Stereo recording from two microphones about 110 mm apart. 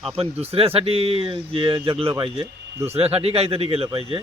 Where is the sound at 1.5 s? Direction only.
50° right (ahead or behind).